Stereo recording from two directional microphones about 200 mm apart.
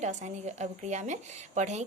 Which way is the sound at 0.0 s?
35° right (ahead or behind).